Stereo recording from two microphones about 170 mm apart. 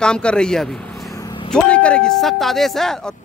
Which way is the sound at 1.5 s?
5° left (ahead or behind).